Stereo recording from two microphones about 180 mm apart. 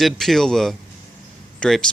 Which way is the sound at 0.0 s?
Centre (ahead or behind).